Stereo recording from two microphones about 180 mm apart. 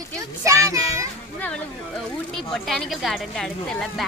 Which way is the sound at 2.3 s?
Centre (ahead or behind).